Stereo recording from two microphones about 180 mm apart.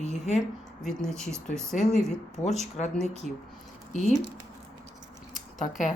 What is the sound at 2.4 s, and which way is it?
Speech, 40° left (ahead or behind).